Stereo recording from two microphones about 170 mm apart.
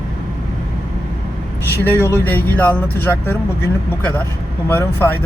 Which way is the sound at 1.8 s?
15° left (ahead or behind).